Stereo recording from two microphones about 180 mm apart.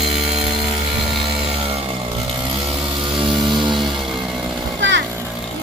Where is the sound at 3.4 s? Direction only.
25° right (ahead or behind).